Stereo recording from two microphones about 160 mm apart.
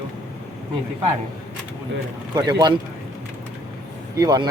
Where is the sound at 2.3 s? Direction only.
25° right (ahead or behind).